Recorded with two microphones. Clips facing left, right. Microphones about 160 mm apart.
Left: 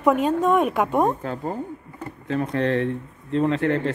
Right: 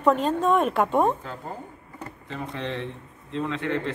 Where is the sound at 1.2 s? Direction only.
55° left (ahead or behind).